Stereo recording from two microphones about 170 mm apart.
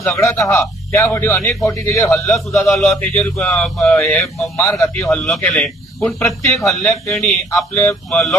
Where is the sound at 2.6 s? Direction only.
Centre (ahead or behind).